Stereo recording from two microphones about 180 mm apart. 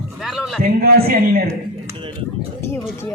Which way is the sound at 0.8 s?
55° right (ahead or behind).